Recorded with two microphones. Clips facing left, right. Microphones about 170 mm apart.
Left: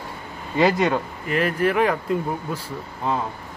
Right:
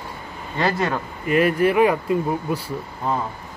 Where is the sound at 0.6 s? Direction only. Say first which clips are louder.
Left 3 dB; centre (ahead or behind).